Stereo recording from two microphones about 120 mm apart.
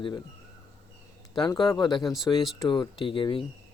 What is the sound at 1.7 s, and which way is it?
Speech, 35° left (ahead or behind).